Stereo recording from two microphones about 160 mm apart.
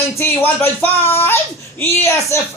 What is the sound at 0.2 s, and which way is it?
A man's voice, 15° left (ahead or behind).